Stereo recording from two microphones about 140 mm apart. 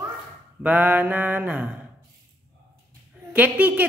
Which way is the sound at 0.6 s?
10° right (ahead or behind).